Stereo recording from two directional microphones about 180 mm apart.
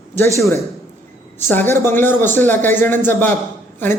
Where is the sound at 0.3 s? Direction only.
15° left (ahead or behind).